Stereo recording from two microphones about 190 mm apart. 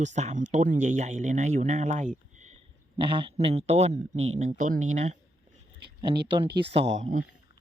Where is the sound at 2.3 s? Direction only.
40° right (ahead or behind).